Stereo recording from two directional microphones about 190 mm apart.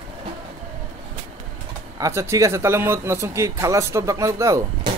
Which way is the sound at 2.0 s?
15° right (ahead or behind).